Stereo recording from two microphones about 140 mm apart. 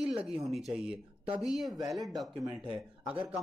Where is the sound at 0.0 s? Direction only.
5° right (ahead or behind).